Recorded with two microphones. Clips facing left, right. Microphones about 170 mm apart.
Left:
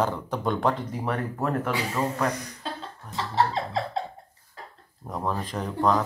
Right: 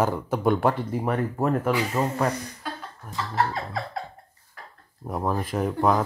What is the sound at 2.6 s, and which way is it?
Cough, 25° left (ahead or behind).